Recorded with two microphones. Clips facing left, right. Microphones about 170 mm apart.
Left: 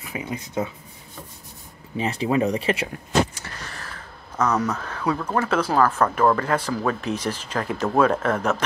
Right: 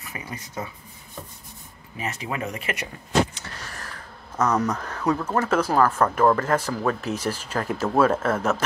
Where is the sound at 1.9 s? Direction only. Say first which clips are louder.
Left 8 dB; 30° left (ahead or behind).